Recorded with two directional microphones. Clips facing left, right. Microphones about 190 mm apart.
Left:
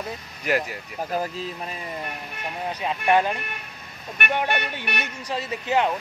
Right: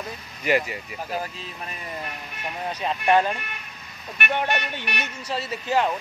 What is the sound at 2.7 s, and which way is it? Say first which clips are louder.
Speech: right 1 dB; 10° left (ahead or behind).